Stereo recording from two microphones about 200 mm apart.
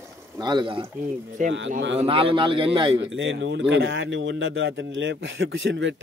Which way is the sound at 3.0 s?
65° right (ahead or behind).